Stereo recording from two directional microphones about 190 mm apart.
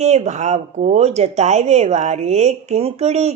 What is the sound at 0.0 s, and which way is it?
Speech, 35° right (ahead or behind).